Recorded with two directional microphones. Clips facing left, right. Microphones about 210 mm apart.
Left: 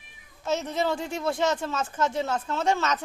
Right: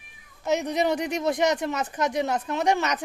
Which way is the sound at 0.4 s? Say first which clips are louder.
Right 3 dB; 15° right (ahead or behind).